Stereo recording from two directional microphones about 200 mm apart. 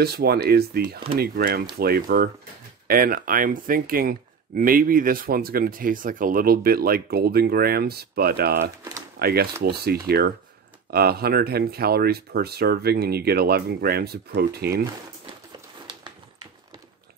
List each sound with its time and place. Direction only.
0.0 s speech: 50° right (ahead or behind)